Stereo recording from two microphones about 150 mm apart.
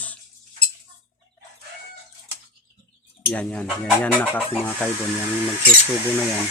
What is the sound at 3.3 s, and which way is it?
Speech, 10° left (ahead or behind).